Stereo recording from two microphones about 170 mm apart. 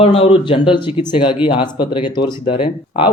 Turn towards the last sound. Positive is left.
turn(degrees=30)  # may be behind; listen again after turning